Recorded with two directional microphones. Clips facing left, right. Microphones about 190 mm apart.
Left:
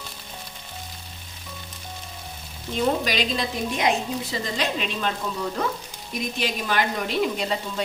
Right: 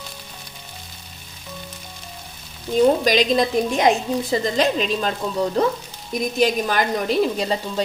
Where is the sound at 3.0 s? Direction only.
40° right (ahead or behind).